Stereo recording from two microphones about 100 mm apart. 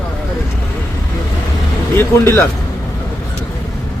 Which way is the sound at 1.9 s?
25° left (ahead or behind).